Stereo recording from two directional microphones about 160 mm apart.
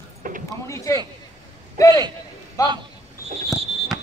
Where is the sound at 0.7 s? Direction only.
20° left (ahead or behind).